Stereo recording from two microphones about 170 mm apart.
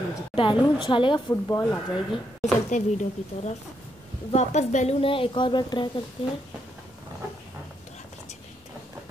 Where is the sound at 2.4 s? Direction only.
45° left (ahead or behind); by 6.0 s 25° left (ahead or behind).